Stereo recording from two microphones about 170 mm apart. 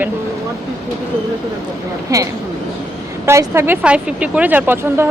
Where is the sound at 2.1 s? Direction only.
20° right (ahead or behind).